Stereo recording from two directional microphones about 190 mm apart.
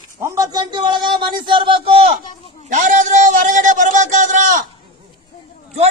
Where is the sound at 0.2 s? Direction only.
15° right (ahead or behind).